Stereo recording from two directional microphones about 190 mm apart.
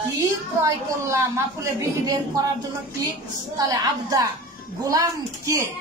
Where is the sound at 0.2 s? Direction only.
15° right (ahead or behind).